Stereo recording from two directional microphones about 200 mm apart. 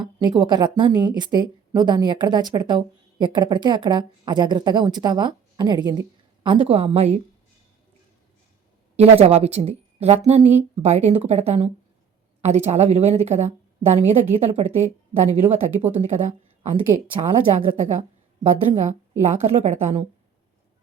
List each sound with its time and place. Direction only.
0.0 s speech: 20° right (ahead or behind)
9.2 s a woman's voice: 30° right (ahead or behind)